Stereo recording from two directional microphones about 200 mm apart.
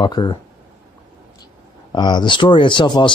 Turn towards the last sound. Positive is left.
turn(degrees=25)  # may be behind; listen again after turning